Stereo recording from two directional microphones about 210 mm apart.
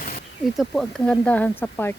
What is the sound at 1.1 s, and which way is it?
Speech, 5° left (ahead or behind).